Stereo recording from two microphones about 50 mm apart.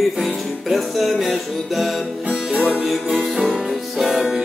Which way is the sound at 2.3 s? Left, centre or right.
Right.